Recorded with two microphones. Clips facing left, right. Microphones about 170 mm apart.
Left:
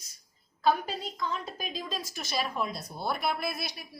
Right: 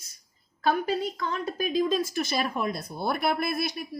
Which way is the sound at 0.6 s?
60° right (ahead or behind).